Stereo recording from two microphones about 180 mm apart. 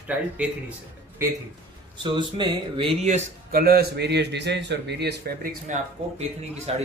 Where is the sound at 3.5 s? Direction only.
55° right (ahead or behind).